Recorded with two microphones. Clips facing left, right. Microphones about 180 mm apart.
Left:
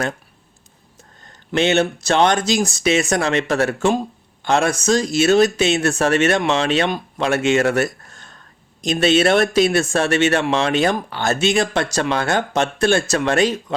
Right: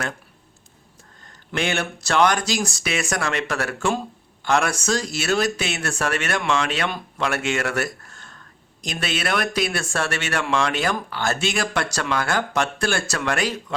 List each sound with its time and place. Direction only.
1.5 s speech: 25° left (ahead or behind)